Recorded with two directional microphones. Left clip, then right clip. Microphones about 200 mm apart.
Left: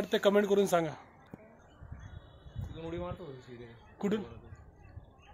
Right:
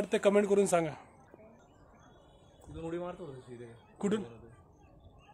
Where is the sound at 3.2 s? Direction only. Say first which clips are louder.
Right 1 dB; 10° right (ahead or behind).